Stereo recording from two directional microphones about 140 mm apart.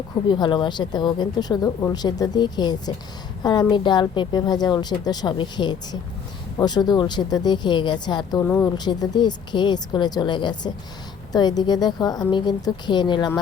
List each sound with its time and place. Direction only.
0.3 s speech: 35° left (ahead or behind)